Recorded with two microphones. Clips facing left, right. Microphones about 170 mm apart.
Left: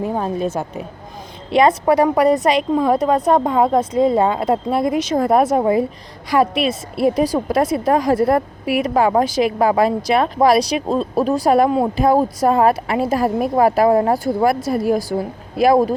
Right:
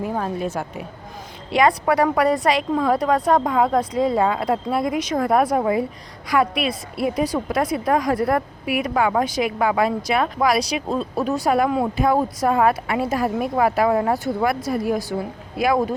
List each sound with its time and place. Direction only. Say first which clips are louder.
0.0 s a woman's voice: left 4 dB; 25° left (ahead or behind)